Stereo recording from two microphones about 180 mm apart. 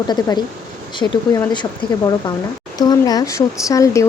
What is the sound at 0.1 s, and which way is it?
Speech, 25° left (ahead or behind).